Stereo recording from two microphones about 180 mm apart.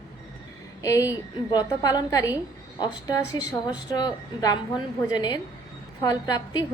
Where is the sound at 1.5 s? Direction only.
20° left (ahead or behind).